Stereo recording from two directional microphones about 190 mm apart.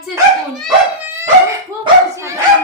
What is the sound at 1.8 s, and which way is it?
Speech, 15° right (ahead or behind).